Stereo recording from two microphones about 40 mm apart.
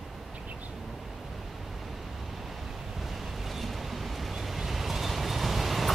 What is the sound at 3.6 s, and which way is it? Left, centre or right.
Vehicle, centre.